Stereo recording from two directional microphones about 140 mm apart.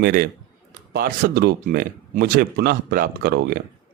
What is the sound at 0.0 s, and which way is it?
Speech, 90° right.